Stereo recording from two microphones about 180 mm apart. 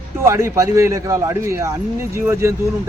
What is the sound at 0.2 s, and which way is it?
A man's voice, 15° right (ahead or behind).